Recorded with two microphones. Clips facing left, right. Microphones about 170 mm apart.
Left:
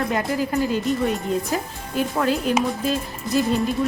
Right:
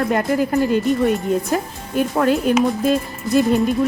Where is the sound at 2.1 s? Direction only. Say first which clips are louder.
Right 5 dB; 55° right (ahead or behind).